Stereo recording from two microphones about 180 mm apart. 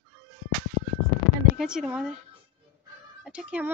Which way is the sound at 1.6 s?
5° right (ahead or behind).